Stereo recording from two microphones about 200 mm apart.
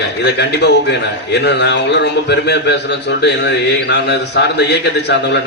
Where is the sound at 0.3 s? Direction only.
60° left (ahead or behind).